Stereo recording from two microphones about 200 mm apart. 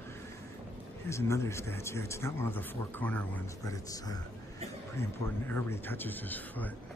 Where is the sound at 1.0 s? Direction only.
15° left (ahead or behind).